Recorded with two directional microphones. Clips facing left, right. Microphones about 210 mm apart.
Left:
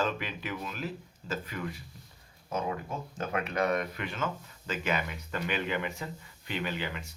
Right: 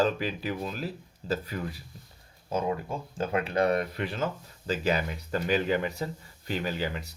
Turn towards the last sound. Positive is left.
turn(degrees=-40)  # may be behind; listen again after turning